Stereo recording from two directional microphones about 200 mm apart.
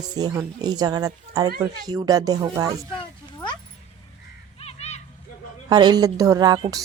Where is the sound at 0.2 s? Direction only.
20° right (ahead or behind).